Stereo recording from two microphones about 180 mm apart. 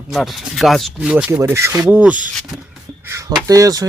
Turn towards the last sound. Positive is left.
turn(degrees=-20)  # may be behind; listen again after turning